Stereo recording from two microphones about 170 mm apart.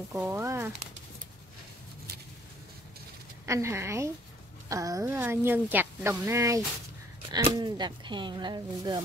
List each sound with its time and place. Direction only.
0.1 s speech: 10° right (ahead or behind)
3.4 s speech: 15° right (ahead or behind)